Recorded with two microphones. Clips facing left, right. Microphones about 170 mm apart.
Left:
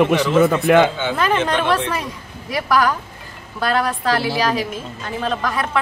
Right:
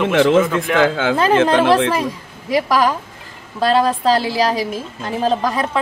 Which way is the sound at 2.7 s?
25° right (ahead or behind).